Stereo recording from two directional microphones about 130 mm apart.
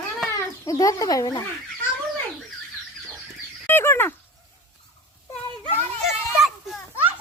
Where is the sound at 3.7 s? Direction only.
15° left (ahead or behind).